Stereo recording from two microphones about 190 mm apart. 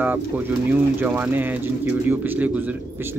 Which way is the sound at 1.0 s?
10° right (ahead or behind).